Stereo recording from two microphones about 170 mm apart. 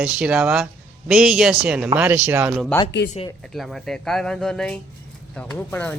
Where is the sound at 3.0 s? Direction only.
75° left (ahead or behind).